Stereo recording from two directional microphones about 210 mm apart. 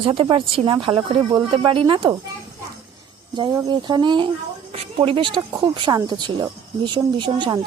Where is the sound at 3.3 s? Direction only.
20° right (ahead or behind).